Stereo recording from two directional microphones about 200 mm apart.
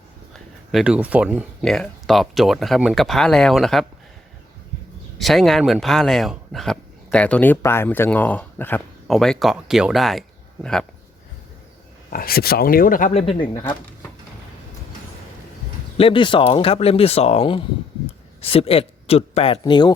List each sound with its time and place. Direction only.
0.7 s speech: 5° right (ahead or behind)
5.1 s speech: centre (ahead or behind)
12.1 s speech: 50° left (ahead or behind); by 13.7 s 20° left (ahead or behind)
16.0 s speech: 25° left (ahead or behind)